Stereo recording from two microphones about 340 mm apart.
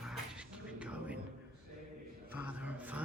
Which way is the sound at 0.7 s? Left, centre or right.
Centre.